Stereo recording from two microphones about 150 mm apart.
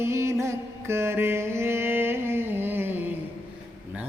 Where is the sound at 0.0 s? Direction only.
20° right (ahead or behind).